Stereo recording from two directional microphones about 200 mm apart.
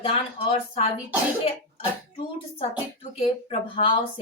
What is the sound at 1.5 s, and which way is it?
Speech, 30° left (ahead or behind).